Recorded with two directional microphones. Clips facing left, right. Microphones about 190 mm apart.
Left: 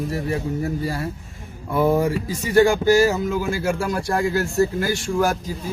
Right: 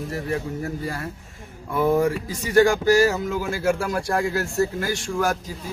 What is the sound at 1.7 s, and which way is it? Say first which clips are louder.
Speech: left 1 dB; 5° left (ahead or behind).